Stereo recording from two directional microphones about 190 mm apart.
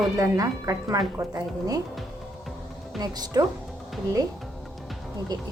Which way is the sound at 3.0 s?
20° right (ahead or behind).